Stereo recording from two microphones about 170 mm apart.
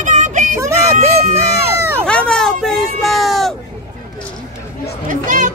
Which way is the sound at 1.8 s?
15° right (ahead or behind).